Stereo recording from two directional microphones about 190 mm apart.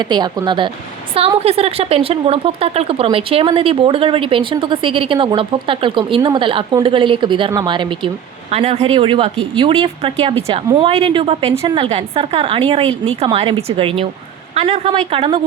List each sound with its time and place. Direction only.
0.1 s a woman's voice: 25° right (ahead or behind)